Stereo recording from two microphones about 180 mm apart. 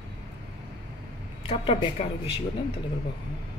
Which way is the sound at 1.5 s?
30° left (ahead or behind).